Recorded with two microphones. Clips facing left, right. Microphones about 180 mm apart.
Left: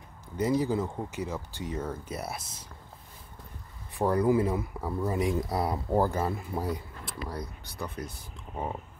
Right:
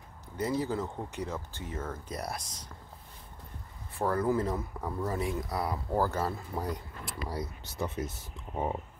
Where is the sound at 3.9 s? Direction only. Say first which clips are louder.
Left 4 dB; 15° left (ahead or behind).